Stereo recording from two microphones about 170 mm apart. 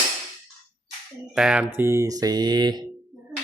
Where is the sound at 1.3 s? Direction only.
5° right (ahead or behind).